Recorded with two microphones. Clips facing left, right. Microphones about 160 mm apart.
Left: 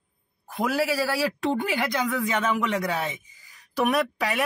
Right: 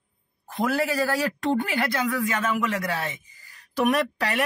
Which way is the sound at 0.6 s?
5° left (ahead or behind).